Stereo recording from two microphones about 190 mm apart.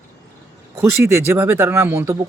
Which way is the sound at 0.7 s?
15° right (ahead or behind).